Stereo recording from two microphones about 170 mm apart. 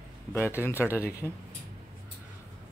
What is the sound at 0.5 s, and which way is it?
Speech, 15° left (ahead or behind).